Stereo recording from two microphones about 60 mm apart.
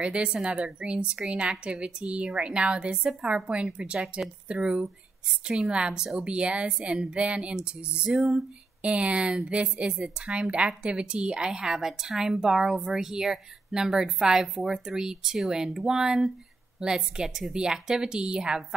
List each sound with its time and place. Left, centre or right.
0.0 s a woman's voice: centre
8.8 s a woman's voice: centre